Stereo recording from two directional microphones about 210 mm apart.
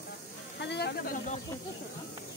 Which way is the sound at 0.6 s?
50° left (ahead or behind).